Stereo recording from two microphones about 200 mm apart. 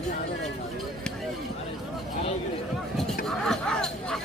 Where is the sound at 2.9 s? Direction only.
Centre (ahead or behind).